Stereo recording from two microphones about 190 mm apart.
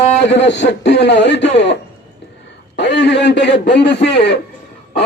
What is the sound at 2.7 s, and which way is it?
Speech, 65° left (ahead or behind).